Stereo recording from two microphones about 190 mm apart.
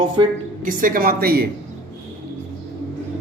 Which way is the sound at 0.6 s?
45° right (ahead or behind).